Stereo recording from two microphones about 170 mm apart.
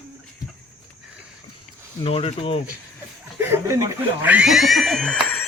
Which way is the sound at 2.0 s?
35° left (ahead or behind).